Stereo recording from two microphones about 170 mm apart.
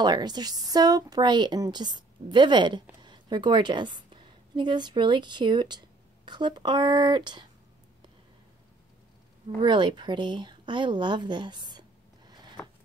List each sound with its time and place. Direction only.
0.0 s a woman's voice: 25° right (ahead or behind)
9.6 s speech: 25° right (ahead or behind)
12.6 s a sound: 15° left (ahead or behind)